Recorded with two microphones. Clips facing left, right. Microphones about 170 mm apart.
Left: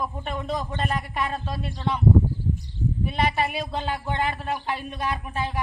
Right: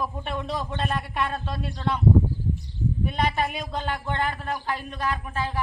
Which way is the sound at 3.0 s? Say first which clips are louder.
Left 1 dB; 5° left (ahead or behind).